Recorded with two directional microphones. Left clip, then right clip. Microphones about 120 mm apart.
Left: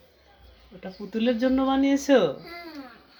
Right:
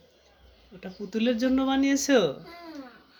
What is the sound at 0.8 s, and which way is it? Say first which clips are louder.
Speech: left 1 dB; 35° right (ahead or behind).